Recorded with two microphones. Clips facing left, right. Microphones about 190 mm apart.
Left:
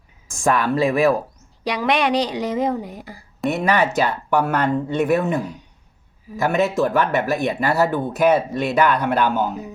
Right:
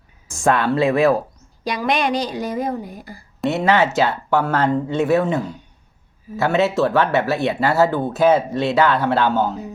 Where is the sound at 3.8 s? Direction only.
15° left (ahead or behind).